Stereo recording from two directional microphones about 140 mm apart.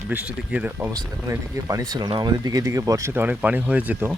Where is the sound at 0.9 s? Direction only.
25° right (ahead or behind).